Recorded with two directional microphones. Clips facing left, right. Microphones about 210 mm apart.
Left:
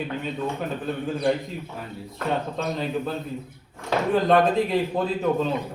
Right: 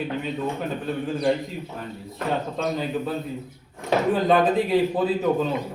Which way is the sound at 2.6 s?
5° right (ahead or behind).